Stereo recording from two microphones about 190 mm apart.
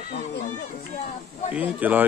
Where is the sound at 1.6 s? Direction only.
10° right (ahead or behind).